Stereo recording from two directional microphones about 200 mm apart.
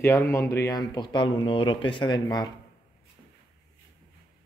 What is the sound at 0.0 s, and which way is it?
Speech, 15° left (ahead or behind).